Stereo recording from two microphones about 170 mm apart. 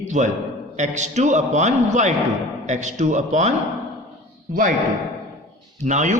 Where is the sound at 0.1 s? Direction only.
45° right (ahead or behind).